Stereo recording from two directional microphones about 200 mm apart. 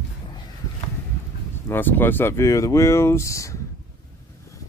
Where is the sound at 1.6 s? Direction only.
10° left (ahead or behind).